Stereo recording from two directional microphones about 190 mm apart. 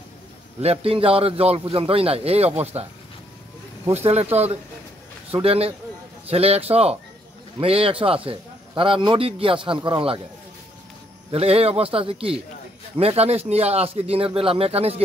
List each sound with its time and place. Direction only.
0.6 s a man's voice: 30° right (ahead or behind)
3.9 s a man's voice: 35° right (ahead or behind)
11.3 s a man's voice: 30° right (ahead or behind)